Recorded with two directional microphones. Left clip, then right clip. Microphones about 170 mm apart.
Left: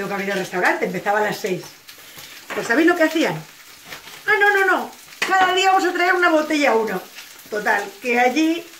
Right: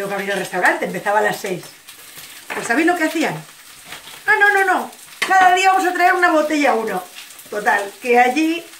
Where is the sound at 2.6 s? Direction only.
20° right (ahead or behind).